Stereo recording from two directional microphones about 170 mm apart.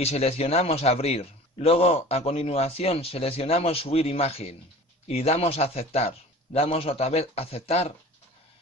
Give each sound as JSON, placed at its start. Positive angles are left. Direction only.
{"t": 0.0, "sound": "a man's voice", "side_deg": 40}